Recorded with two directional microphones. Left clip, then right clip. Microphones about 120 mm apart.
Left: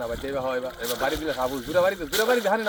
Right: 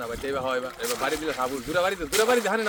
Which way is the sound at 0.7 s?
Centre (ahead or behind).